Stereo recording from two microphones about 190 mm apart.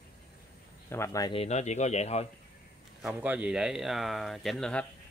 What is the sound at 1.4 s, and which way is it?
Speech, 35° left (ahead or behind).